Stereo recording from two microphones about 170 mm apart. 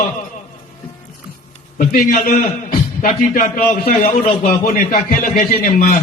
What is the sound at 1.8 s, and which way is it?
A man's voice, 50° left (ahead or behind).